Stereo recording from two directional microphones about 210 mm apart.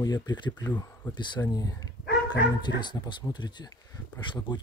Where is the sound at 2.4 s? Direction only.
55° left (ahead or behind).